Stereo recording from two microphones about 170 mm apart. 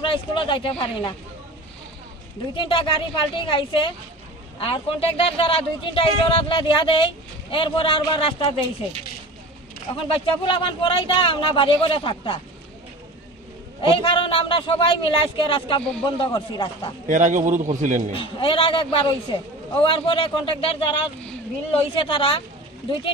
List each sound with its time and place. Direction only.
0.0 s a man's voice: 30° left (ahead or behind)
2.5 s a man's voice: 30° left (ahead or behind)
10.0 s a man's voice: 30° left (ahead or behind)
13.7 s a man's voice: 30° left (ahead or behind)
17.1 s a man's voice: 45° right (ahead or behind)
18.1 s a man's voice: 30° left (ahead or behind)
21.7 s a man's voice: 30° left (ahead or behind)